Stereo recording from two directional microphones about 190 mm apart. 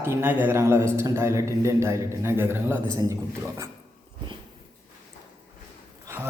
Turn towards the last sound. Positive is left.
turn(degrees=-15)  # may be behind; listen again after turning